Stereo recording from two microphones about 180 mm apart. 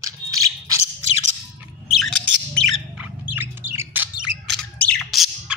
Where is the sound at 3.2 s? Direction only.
10° right (ahead or behind).